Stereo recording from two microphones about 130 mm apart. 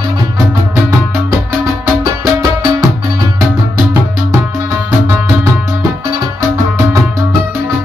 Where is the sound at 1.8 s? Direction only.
25° right (ahead or behind).